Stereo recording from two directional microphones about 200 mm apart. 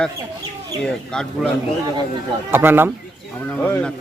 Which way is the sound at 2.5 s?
10° right (ahead or behind).